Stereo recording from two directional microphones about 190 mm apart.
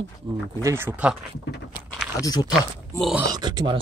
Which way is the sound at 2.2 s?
20° left (ahead or behind).